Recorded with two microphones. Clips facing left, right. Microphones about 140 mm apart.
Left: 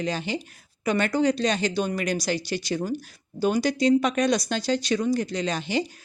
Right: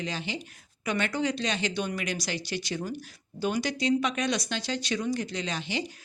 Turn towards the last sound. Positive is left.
turn(degrees=45)  # may be behind; listen again after turning